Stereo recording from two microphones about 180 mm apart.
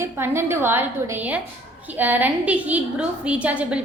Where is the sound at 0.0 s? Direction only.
15° right (ahead or behind).